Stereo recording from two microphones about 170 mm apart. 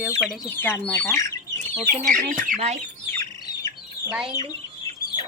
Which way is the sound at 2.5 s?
45° right (ahead or behind).